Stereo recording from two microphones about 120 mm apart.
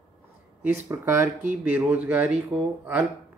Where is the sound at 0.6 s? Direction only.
20° right (ahead or behind).